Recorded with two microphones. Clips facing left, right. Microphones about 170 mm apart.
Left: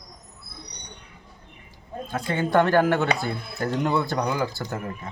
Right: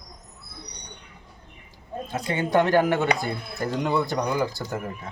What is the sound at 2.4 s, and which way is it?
Speech, 15° right (ahead or behind).